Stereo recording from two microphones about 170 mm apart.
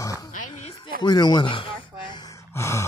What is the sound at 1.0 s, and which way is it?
Gasp, 25° left (ahead or behind).